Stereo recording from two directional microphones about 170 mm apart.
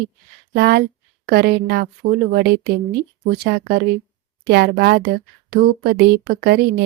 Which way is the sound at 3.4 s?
65° right (ahead or behind).